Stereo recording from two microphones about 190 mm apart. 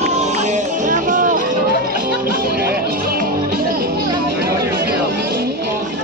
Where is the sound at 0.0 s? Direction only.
35° right (ahead or behind).